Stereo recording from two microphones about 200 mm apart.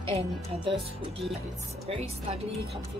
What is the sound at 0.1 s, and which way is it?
Speech, 30° right (ahead or behind).